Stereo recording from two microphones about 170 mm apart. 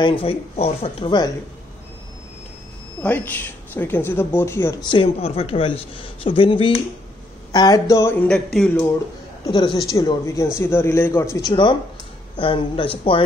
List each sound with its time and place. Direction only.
0.0 s a man's voice: 35° left (ahead or behind)
3.0 s speech: 10° left (ahead or behind)
4.8 s a man's voice: 30° left (ahead or behind); by 8.8 s 5° left (ahead or behind)
9.5 s a man's voice: 30° left (ahead or behind)